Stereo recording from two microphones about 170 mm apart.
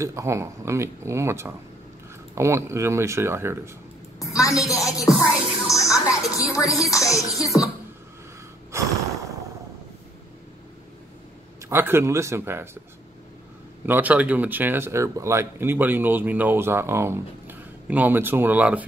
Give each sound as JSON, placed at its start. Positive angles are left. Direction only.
{"t": 0.0, "sound": "speech", "side_deg": -15}
{"t": 4.2, "sound": "a woman's voice", "side_deg": 20}
{"t": 5.0, "sound": "music", "side_deg": 0}
{"t": 6.2, "sound": "a woman's voice", "side_deg": 20}
{"t": 7.5, "sound": "speech", "side_deg": -5}
{"t": 8.7, "sound": "snort", "side_deg": -15}
{"t": 11.7, "sound": "speech", "side_deg": -15}
{"t": 13.8, "sound": "speech", "side_deg": -10}